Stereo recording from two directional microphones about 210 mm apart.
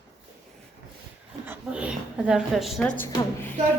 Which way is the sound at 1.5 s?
5° right (ahead or behind).